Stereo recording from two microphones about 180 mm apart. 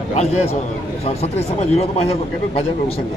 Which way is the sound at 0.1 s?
35° left (ahead or behind).